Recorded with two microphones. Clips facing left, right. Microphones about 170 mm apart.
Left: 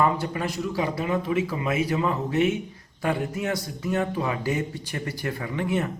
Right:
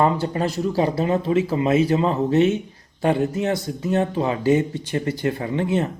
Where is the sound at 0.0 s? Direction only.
30° right (ahead or behind).